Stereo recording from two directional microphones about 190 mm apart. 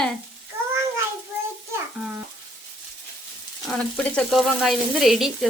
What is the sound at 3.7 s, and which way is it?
Frying, 5° left (ahead or behind).